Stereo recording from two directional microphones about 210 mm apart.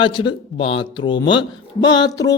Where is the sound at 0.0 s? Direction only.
25° left (ahead or behind).